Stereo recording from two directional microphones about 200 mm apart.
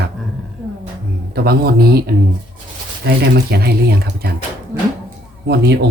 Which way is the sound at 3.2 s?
55° right (ahead or behind).